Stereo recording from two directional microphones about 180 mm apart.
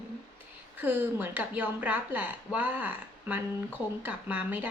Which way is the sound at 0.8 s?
10° right (ahead or behind).